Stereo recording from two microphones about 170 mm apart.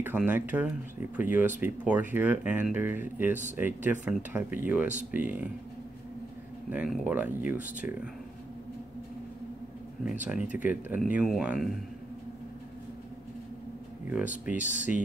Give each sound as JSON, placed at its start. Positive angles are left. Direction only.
{"t": 0.0, "sound": "speech", "side_deg": -10}
{"t": 6.7, "sound": "speech", "side_deg": -10}
{"t": 10.0, "sound": "speech", "side_deg": -10}
{"t": 14.6, "sound": "speech", "side_deg": 50}